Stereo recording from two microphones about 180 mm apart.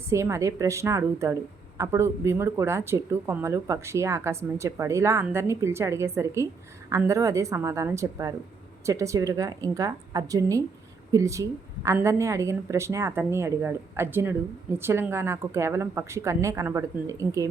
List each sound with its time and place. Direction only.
0.1 s a woman's voice: 15° right (ahead or behind)